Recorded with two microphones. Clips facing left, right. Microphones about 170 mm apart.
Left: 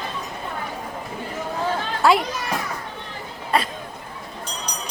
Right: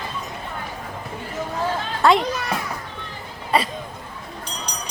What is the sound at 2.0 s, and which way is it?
Speech, 5° left (ahead or behind).